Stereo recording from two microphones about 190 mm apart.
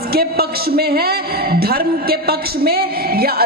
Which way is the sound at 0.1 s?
55° right (ahead or behind).